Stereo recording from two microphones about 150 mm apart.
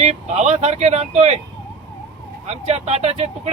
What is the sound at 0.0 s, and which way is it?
Speech, 45° right (ahead or behind).